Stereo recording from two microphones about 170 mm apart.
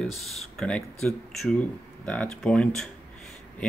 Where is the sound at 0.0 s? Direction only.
Centre (ahead or behind).